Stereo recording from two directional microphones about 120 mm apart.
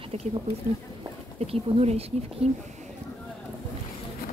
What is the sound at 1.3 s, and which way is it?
Speech, 65° right (ahead or behind).